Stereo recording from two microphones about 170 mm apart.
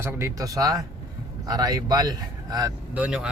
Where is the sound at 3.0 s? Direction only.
5° right (ahead or behind).